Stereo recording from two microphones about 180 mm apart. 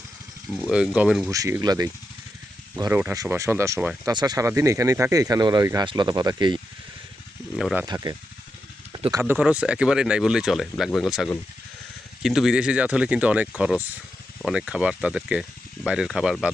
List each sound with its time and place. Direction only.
0.5 s speech: centre (ahead or behind)
1.3 s speech: 15° right (ahead or behind)
7.5 s speech: 5° right (ahead or behind)
7.9 s speech: 20° right (ahead or behind)
8.9 s a sound: 25° right (ahead or behind)
9.2 s speech: 10° right (ahead or behind)